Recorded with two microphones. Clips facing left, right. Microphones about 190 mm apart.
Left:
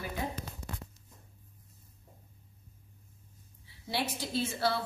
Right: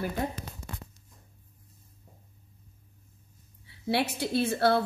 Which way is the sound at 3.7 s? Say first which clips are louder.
Right 7 dB; 65° right (ahead or behind).